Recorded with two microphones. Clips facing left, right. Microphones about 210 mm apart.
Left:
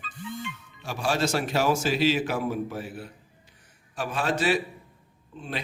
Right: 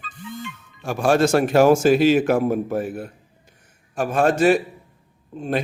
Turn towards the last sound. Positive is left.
turn(degrees=-45)  # may be behind; listen again after turning